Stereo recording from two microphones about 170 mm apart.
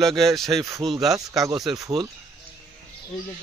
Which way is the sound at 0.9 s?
20° right (ahead or behind).